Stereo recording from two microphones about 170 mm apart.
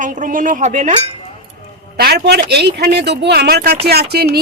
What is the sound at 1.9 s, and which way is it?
A woman's voice, 70° right (ahead or behind).